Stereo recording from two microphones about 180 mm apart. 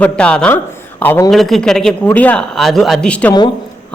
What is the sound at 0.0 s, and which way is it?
A man's voice, 5° left (ahead or behind).